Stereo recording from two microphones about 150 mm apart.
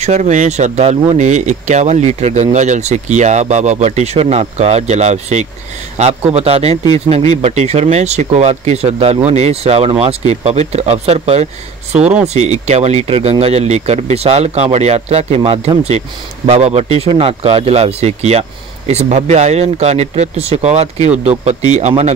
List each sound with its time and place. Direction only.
0.0 s speech: 50° right (ahead or behind)